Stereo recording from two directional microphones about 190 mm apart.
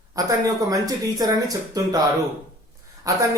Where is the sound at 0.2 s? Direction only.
20° right (ahead or behind).